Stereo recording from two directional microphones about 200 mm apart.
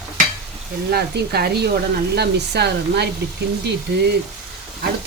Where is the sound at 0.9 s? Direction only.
50° right (ahead or behind).